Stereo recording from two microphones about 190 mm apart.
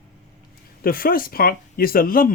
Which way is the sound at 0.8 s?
50° left (ahead or behind).